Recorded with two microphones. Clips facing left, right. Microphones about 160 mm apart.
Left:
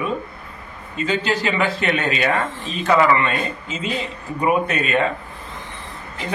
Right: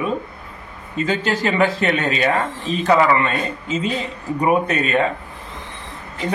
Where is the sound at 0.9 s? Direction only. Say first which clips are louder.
Right 1 dB; 45° right (ahead or behind).